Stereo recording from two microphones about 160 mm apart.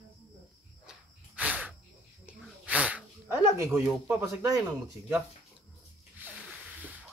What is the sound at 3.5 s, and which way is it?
Speech, 15° right (ahead or behind).